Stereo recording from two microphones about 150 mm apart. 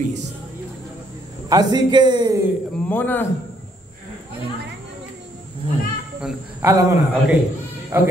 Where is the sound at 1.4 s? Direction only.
25° right (ahead or behind).